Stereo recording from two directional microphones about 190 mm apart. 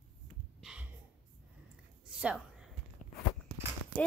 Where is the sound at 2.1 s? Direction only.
5° right (ahead or behind).